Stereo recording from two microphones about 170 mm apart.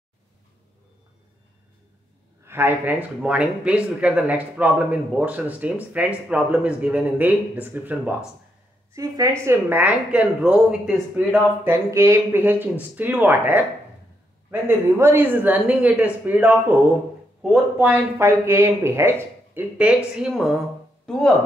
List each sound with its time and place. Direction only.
2.4 s speech: 10° right (ahead or behind)
8.9 s a woman's voice: 20° right (ahead or behind); by 21.2 s 5° left (ahead or behind)